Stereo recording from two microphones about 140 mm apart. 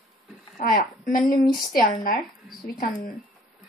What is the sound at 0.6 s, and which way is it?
Speech, 90° left.